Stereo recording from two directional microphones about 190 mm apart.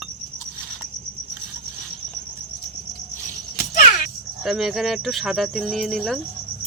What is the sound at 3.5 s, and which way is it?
Music, 50° left (ahead or behind).